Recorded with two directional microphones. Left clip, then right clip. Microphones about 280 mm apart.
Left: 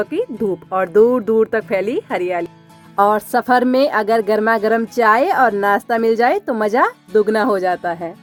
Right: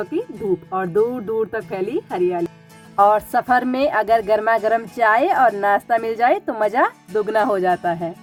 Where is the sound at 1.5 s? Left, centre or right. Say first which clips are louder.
Left 6 dB; left.